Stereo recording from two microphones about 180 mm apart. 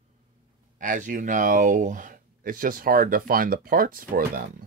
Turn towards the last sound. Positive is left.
turn(degrees=-50)  # may be behind; listen again after turning